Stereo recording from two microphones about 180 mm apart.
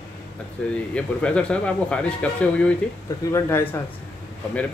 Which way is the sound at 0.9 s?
5° left (ahead or behind).